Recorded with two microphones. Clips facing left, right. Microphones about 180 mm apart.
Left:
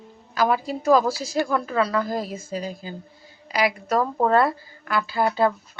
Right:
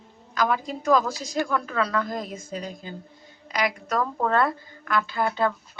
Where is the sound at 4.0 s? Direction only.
25° left (ahead or behind).